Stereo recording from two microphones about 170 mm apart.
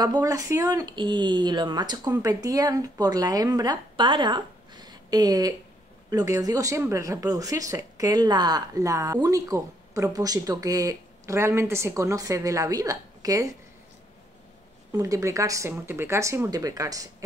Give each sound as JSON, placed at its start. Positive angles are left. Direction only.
{"t": 0.0, "sound": "speech", "side_deg": -20}
{"t": 14.9, "sound": "speech", "side_deg": -20}